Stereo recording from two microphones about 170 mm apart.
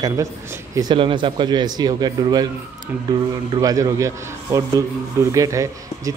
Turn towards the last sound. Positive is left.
turn(degrees=-20)  # may be behind; listen again after turning